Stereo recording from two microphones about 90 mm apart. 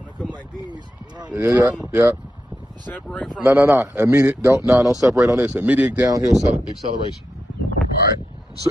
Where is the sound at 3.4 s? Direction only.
25° right (ahead or behind).